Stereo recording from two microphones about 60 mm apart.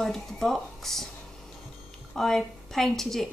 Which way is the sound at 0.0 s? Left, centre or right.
Centre.